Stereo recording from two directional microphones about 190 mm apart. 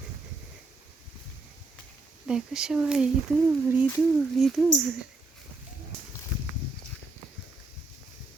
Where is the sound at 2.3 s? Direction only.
5° right (ahead or behind).